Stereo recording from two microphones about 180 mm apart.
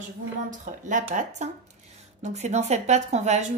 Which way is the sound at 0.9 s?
45° right (ahead or behind).